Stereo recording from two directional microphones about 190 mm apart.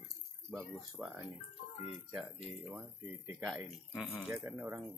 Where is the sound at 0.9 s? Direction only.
10° right (ahead or behind).